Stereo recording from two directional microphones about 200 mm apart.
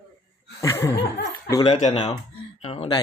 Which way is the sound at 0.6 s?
15° left (ahead or behind).